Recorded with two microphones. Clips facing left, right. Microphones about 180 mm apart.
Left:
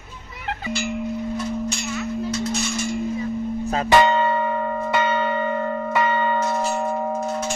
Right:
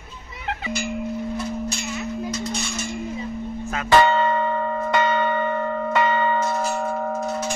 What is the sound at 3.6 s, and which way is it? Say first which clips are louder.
Church bell: left 5 dB; 35° left (ahead or behind).